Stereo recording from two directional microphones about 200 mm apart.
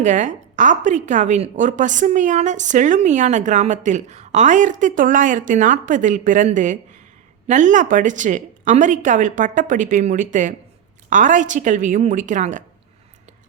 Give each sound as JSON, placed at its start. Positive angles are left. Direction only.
{"t": 0.0, "sound": "a woman's voice", "side_deg": -40}